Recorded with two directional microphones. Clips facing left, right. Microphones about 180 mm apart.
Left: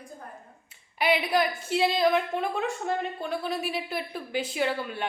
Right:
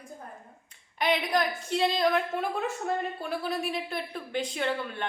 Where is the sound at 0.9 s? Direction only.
5° left (ahead or behind).